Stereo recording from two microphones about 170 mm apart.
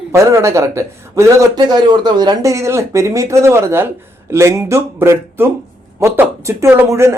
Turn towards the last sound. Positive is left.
turn(degrees=-15)  # may be behind; listen again after turning